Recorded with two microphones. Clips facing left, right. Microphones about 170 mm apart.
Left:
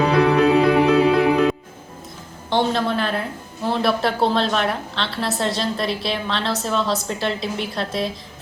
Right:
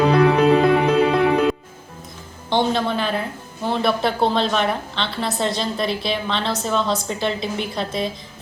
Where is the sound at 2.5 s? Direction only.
Centre (ahead or behind).